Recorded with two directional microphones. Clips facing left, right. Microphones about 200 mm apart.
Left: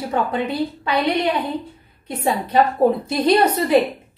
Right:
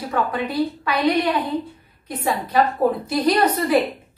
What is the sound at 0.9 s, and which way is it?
Speech, 25° left (ahead or behind).